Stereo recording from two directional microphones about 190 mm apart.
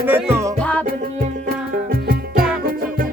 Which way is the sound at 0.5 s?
5° left (ahead or behind).